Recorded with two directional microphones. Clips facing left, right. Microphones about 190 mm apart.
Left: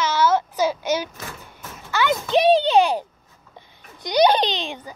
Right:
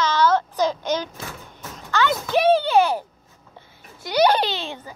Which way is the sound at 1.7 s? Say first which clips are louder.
Even; 10° left (ahead or behind).